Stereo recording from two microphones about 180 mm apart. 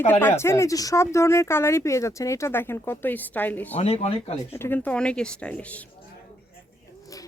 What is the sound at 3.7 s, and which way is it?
Speech, 35° left (ahead or behind).